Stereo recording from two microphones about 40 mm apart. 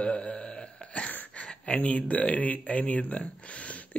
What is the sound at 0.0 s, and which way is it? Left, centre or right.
Burping, left.